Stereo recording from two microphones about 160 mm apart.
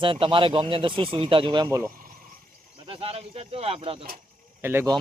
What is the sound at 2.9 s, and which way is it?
Speech, 35° right (ahead or behind).